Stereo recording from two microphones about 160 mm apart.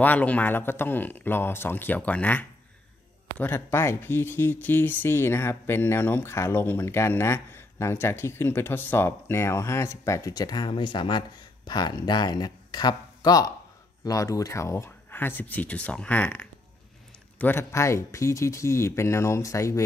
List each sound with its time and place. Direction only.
0.0 s speech: 10° left (ahead or behind)